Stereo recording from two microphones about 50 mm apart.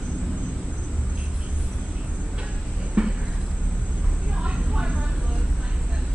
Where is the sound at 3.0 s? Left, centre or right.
Right.